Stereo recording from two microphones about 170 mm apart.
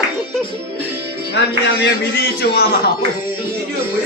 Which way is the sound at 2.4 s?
65° left (ahead or behind).